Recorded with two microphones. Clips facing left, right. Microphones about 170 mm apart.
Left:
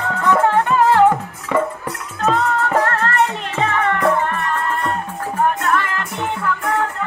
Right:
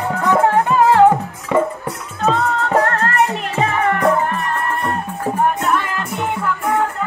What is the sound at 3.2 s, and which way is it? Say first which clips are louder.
Music: right 1 dB; 10° right (ahead or behind).